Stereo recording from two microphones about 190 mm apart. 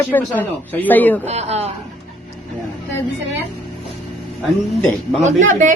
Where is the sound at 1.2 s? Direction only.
35° right (ahead or behind).